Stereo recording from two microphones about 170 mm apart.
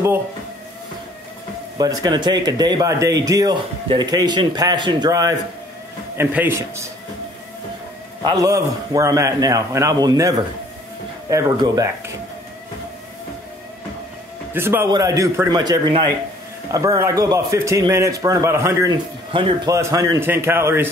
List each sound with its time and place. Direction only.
1.8 s a man's voice: 25° right (ahead or behind)
8.2 s a man's voice: 20° right (ahead or behind)
14.5 s a man's voice: 15° right (ahead or behind)
19.3 s a man's voice: 30° right (ahead or behind)
19.7 s a man's voice: 20° right (ahead or behind)